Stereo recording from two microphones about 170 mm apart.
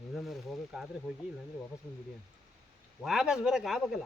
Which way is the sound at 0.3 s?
Centre (ahead or behind).